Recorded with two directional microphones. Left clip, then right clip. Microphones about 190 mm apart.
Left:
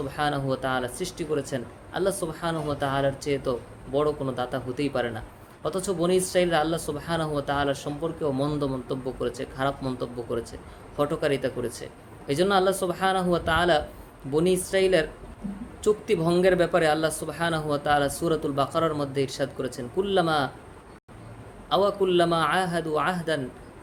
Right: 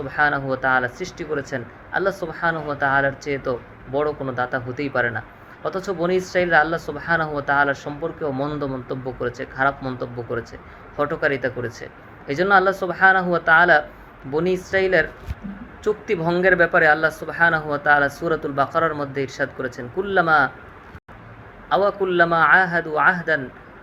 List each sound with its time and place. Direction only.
0.1 s speech: 15° left (ahead or behind)
21.7 s speech: 20° left (ahead or behind)